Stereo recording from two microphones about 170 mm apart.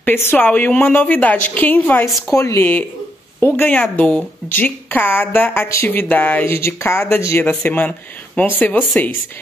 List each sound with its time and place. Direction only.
0.0 s speech: 10° left (ahead or behind)
2.0 s speech: centre (ahead or behind)
2.3 s speech: 15° left (ahead or behind)